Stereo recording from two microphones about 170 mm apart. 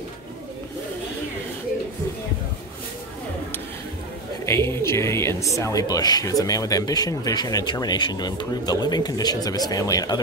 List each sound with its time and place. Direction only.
4.5 s speech: 15° left (ahead or behind)